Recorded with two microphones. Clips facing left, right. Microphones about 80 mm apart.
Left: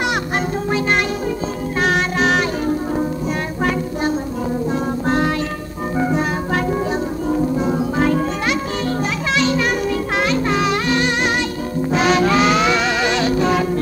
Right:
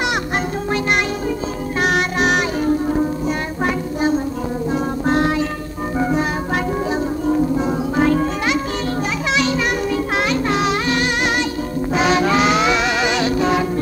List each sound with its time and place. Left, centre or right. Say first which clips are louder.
1.8 s music: even; centre
4.6 s music: right 3 dB; centre
7.6 s music: even; centre
10.5 s music: even; centre